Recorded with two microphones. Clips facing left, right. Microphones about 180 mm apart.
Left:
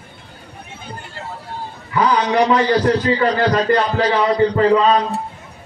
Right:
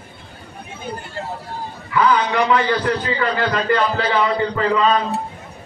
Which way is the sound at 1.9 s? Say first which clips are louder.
Left 1 dB; 40° left (ahead or behind).